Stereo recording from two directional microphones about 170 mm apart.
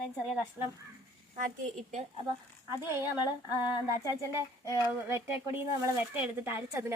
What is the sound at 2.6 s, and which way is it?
Speech, 15° right (ahead or behind).